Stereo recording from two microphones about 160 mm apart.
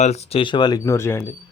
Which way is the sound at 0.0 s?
45° left (ahead or behind).